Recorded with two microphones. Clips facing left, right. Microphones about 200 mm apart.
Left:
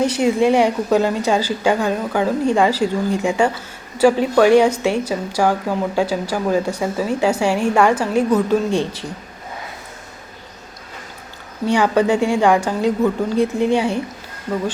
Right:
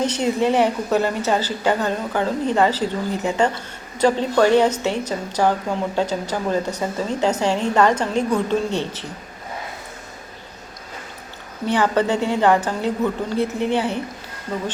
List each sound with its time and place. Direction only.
0.0 s a woman's voice: 10° left (ahead or behind)
11.6 s a woman's voice: 15° left (ahead or behind)